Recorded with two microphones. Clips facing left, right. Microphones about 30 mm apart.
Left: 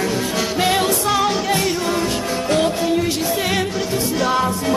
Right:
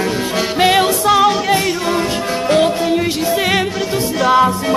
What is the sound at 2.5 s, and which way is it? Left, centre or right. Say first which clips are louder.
Music: right 4 dB; right.